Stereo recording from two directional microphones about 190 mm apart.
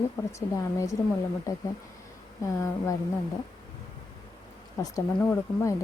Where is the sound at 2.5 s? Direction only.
15° left (ahead or behind).